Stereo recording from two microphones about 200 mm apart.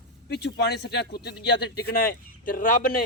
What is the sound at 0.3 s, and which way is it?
A man's voice, 55° left (ahead or behind).